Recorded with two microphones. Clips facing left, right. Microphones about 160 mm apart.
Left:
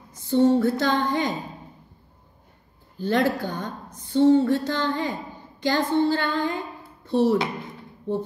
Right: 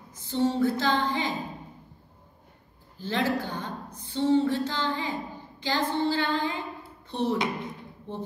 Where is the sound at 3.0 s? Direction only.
50° left (ahead or behind).